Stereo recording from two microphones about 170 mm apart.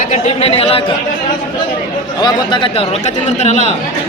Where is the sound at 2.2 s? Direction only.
30° left (ahead or behind).